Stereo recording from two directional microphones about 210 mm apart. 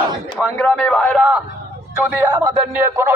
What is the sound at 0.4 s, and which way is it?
A man's voice, 5° left (ahead or behind).